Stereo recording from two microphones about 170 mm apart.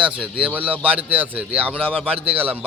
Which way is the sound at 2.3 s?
10° right (ahead or behind).